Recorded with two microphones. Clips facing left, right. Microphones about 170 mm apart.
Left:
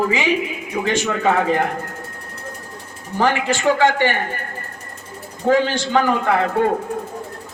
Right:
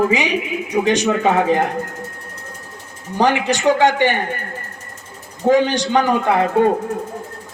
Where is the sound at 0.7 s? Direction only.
20° right (ahead or behind).